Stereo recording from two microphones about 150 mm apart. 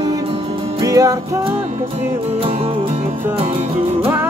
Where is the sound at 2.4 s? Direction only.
40° right (ahead or behind).